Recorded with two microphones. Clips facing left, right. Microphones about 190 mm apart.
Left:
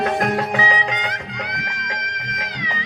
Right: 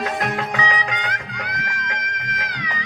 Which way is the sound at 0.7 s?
20° left (ahead or behind).